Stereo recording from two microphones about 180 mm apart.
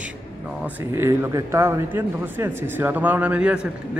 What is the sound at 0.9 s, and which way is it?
Speech, 15° right (ahead or behind).